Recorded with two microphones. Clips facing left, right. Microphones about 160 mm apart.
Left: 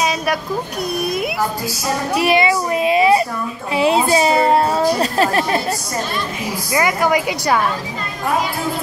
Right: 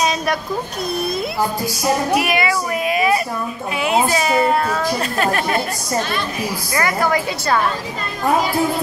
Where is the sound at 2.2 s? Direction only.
30° left (ahead or behind).